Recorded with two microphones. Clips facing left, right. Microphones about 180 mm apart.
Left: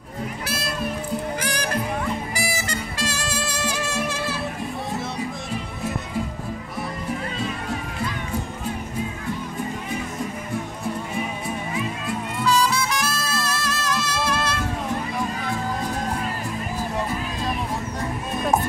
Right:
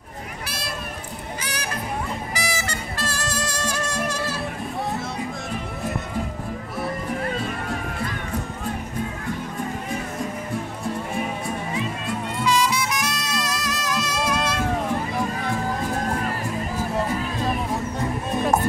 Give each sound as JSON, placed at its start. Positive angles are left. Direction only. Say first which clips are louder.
{"t": 3.7, "sound": "music", "louder": "even", "side_deg": 0}
{"t": 12.4, "sound": "music", "louder": "left 1 dB", "side_deg": -15}